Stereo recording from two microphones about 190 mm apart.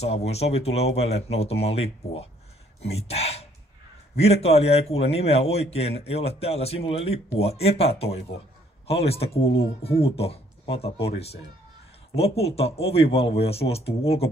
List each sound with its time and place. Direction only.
0.0 s speech: 35° left (ahead or behind)